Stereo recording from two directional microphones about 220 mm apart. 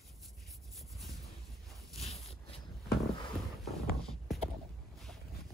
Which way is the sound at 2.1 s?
25° left (ahead or behind).